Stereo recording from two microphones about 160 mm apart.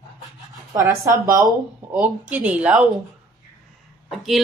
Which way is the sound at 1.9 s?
10° right (ahead or behind).